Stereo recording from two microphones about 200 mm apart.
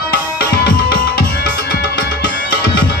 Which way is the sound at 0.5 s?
60° left (ahead or behind).